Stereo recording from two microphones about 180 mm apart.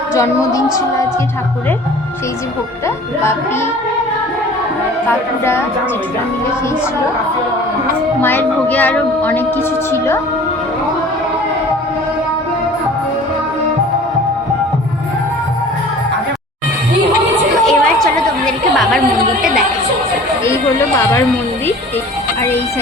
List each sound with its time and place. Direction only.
0.1 s speech: 15° left (ahead or behind)
5.0 s speech: 15° left (ahead or behind)
8.2 s speech: 10° left (ahead or behind)
17.7 s a sound: 5° left (ahead or behind)